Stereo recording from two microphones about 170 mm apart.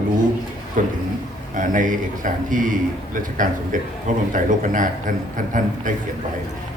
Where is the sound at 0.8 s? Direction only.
50° right (ahead or behind).